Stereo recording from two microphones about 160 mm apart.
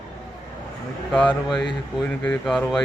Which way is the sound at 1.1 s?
5° left (ahead or behind).